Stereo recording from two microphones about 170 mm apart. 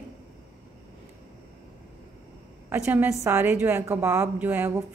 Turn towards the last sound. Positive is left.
turn(degrees=-15)  # may be behind; listen again after turning